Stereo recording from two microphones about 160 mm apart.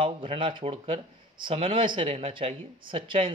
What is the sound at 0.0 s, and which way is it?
Speech, 35° right (ahead or behind).